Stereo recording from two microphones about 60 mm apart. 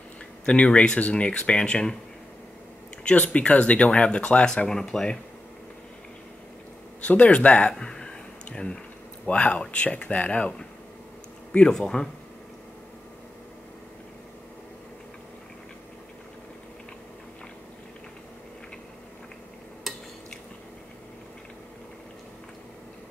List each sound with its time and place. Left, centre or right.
0.5 s speech: centre
3.0 s speech: left
7.1 s speech: left
7.7 s a sound: centre
9.2 s speech: centre
19.9 s stir: centre